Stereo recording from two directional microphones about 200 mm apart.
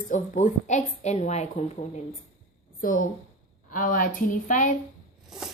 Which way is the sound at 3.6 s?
40° left (ahead or behind).